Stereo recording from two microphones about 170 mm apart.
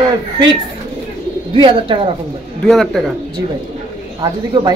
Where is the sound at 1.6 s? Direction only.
30° right (ahead or behind).